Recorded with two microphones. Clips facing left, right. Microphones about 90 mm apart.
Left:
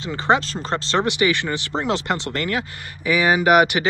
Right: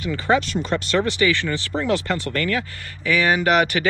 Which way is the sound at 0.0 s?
25° left (ahead or behind).